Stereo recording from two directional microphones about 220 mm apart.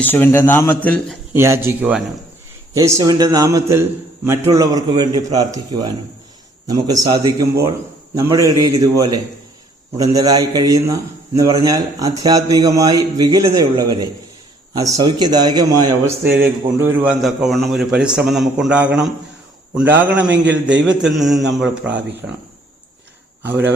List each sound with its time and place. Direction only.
0.0 s a man's voice: 10° left (ahead or behind)
1.3 s a man's voice: 10° right (ahead or behind)
23.4 s speech: 10° right (ahead or behind)